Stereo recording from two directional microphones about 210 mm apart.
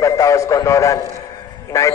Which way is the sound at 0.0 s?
15° left (ahead or behind).